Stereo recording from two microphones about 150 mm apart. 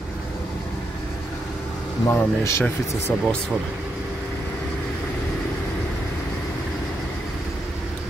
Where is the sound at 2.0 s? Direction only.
15° left (ahead or behind).